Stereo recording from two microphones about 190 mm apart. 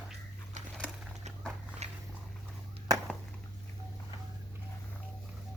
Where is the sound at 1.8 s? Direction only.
35° right (ahead or behind).